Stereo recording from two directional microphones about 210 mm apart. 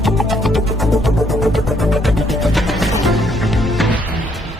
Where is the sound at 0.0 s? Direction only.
Centre (ahead or behind).